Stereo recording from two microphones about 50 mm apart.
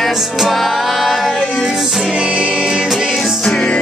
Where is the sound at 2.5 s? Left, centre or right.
Centre.